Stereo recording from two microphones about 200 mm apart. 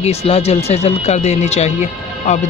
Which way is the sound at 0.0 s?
30° left (ahead or behind).